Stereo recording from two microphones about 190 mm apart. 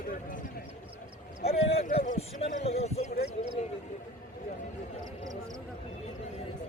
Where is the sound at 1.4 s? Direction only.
35° left (ahead or behind).